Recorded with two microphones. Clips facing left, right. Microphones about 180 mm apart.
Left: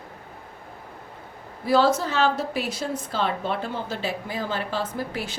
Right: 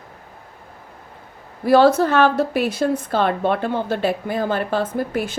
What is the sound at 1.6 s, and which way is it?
A woman's voice, 60° right (ahead or behind).